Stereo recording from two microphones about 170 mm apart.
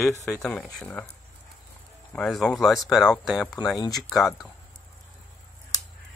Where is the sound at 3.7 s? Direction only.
20° left (ahead or behind).